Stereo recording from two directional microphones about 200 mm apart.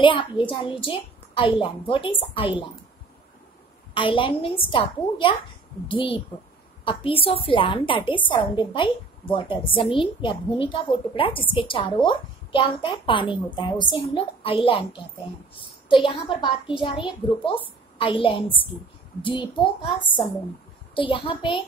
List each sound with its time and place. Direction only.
0.0 s a woman's voice: 25° left (ahead or behind)
3.9 s a woman's voice: 25° left (ahead or behind)